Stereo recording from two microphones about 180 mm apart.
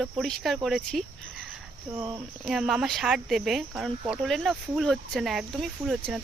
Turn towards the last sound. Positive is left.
turn(degrees=0)  # may be behind; listen again after turning